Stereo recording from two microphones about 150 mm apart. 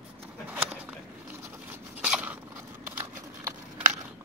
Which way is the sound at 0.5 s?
10° right (ahead or behind).